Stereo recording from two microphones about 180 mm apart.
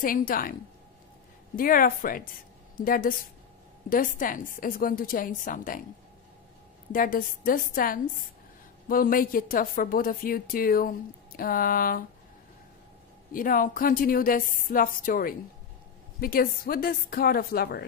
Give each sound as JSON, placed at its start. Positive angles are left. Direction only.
{"t": 0.0, "sound": "a woman's voice", "side_deg": 50}
{"t": 1.6, "sound": "a woman's voice", "side_deg": 50}
{"t": 6.9, "sound": "a woman's voice", "side_deg": 50}
{"t": 13.3, "sound": "a woman's voice", "side_deg": 50}